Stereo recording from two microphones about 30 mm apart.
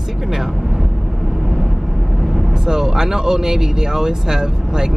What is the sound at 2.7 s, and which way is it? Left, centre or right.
Speech, centre.